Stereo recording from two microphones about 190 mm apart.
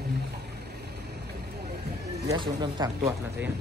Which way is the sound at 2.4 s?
20° right (ahead or behind).